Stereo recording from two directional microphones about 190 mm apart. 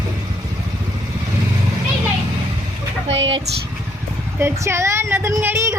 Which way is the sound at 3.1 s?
70° right (ahead or behind).